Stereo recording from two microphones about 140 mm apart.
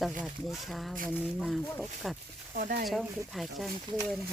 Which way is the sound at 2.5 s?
85° right.